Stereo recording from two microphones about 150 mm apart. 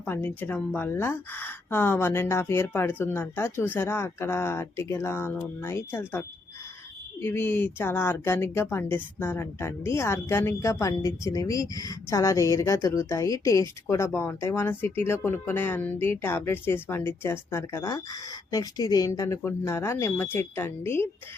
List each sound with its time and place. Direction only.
0.0 s a woman's voice: 15° left (ahead or behind)